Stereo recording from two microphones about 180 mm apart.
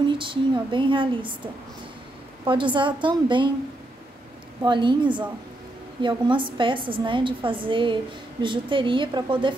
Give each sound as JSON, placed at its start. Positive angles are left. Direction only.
{"t": 0.2, "sound": "a woman's voice", "side_deg": -25}
{"t": 4.6, "sound": "a woman's voice", "side_deg": -25}